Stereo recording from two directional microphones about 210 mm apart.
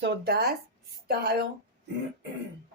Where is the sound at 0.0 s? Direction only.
50° right (ahead or behind).